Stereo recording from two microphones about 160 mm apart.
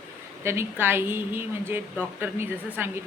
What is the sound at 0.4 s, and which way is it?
A man's voice, 15° right (ahead or behind).